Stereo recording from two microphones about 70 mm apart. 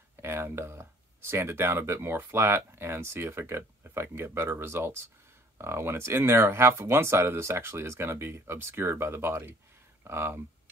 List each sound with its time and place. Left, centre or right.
0.2 s speech: right